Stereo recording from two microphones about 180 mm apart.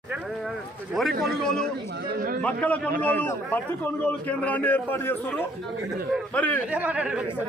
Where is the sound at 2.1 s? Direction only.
50° right (ahead or behind).